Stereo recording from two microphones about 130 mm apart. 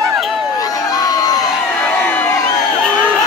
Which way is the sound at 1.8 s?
10° left (ahead or behind).